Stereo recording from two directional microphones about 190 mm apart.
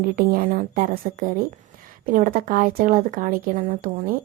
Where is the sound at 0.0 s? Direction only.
50° right (ahead or behind).